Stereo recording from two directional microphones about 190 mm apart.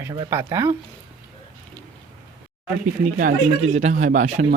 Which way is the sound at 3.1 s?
40° right (ahead or behind).